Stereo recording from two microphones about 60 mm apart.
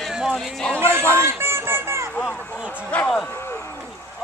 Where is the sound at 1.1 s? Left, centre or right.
Right.